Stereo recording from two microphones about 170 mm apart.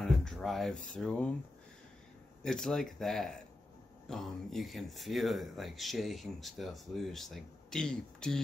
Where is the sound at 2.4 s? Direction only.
5° left (ahead or behind).